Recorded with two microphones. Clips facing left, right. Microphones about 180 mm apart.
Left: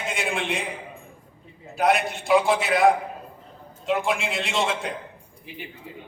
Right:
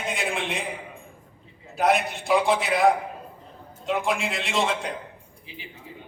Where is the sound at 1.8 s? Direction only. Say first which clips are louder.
Even; centre (ahead or behind).